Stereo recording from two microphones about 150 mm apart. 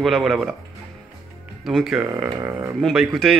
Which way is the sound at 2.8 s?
Centre (ahead or behind).